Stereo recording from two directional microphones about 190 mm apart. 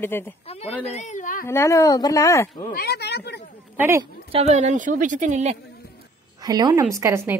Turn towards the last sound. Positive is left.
turn(degrees=-15)  # may be behind; listen again after turning